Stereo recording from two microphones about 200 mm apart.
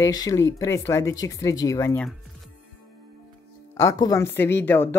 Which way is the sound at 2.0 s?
Centre (ahead or behind).